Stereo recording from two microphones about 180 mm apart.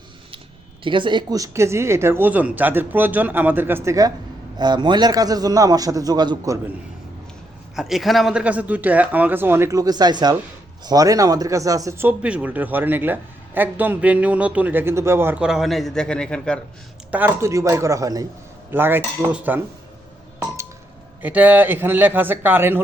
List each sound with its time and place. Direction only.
0.9 s a man's voice: 25° right (ahead or behind)
7.8 s speech: centre (ahead or behind)
17.1 s speech: 10° right (ahead or behind)
21.2 s speech: 10° right (ahead or behind)